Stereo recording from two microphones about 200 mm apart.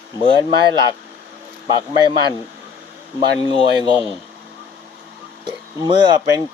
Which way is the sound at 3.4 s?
25° left (ahead or behind).